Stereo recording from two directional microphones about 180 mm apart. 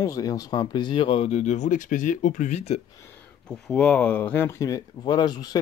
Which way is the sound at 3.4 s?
5° left (ahead or behind).